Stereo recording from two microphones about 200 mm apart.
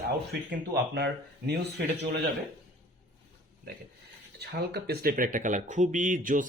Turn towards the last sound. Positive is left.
turn(degrees=-40)  # may be behind; listen again after turning